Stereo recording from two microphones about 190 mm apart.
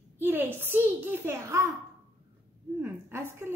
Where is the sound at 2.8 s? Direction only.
10° right (ahead or behind).